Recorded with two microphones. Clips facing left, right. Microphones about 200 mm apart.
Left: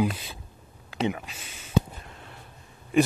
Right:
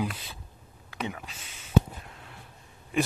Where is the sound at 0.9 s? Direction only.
20° left (ahead or behind).